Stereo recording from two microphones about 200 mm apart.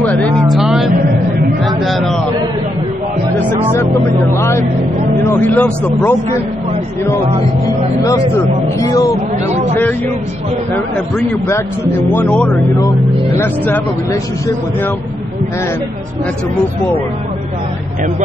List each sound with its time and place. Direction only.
0.0 s speech: 5° left (ahead or behind)
1.9 s a sound: centre (ahead or behind)
4.3 s a man's voice: 15° left (ahead or behind)
8.7 s a man's voice: 15° left (ahead or behind)
9.5 s speech: 35° right (ahead or behind)
12.1 s speech: 5° left (ahead or behind)